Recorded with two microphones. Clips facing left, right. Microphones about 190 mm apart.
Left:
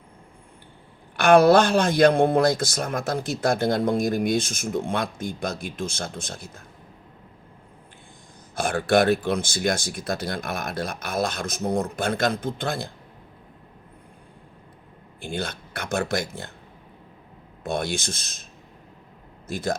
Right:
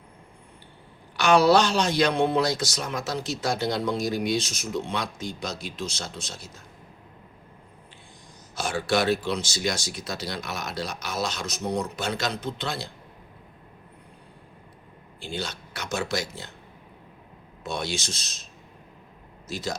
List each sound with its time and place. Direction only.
1.1 s speech: 55° left (ahead or behind)
8.5 s speech: 55° left (ahead or behind)
15.2 s speech: 55° left (ahead or behind)
17.6 s speech: 55° left (ahead or behind)
19.5 s speech: 55° left (ahead or behind)